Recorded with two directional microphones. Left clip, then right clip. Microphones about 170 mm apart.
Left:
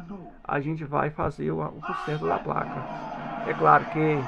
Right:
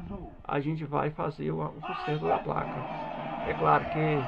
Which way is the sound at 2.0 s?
20° left (ahead or behind).